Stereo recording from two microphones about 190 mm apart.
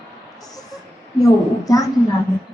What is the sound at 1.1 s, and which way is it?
Speech, 20° left (ahead or behind).